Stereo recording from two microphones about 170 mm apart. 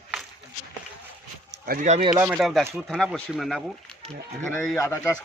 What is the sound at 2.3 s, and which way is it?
Speech, centre (ahead or behind).